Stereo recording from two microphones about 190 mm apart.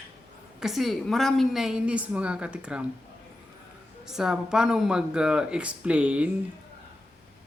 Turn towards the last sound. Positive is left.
turn(degrees=-5)  # may be behind; listen again after turning